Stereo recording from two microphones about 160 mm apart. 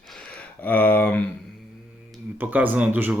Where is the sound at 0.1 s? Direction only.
5° left (ahead or behind).